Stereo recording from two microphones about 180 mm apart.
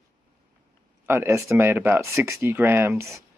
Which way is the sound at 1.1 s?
15° right (ahead or behind).